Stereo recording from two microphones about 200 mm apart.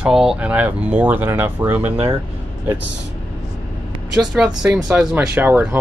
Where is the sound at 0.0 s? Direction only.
5° right (ahead or behind).